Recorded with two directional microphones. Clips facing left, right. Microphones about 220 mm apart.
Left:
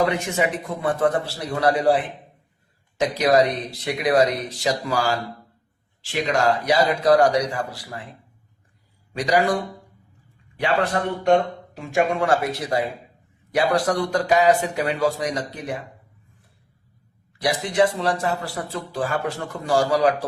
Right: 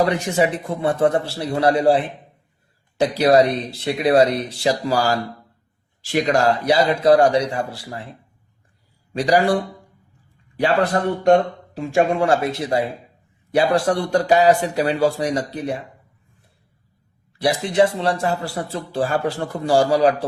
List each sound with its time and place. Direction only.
0.1 s a man's voice: 35° right (ahead or behind)
9.1 s speech: 30° right (ahead or behind)
10.6 s a man's voice: 35° right (ahead or behind)
17.3 s a man's voice: 25° right (ahead or behind)